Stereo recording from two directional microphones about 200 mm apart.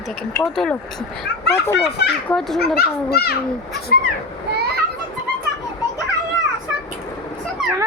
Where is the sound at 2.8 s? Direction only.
50° left (ahead or behind).